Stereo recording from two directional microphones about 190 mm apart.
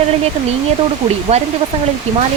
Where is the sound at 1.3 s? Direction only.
35° right (ahead or behind).